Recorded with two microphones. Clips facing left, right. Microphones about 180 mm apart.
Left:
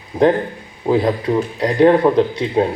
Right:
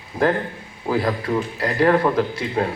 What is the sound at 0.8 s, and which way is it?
Speech, 20° left (ahead or behind).